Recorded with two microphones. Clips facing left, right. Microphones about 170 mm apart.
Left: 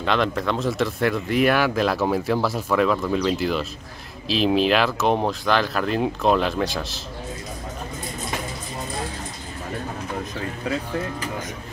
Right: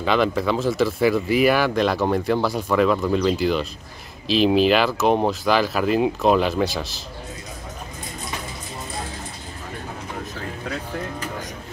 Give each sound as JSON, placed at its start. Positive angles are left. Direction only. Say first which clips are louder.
{"t": 0.0, "sound": "speech", "louder": "right 2 dB", "side_deg": 0}